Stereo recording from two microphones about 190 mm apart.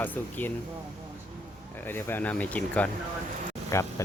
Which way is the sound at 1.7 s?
10° left (ahead or behind).